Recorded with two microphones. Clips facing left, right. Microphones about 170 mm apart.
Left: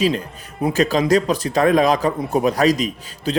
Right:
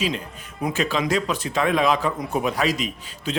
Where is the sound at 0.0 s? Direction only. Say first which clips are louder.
Left 7 dB; 40° left (ahead or behind).